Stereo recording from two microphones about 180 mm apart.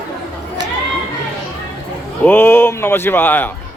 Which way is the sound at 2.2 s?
10° left (ahead or behind).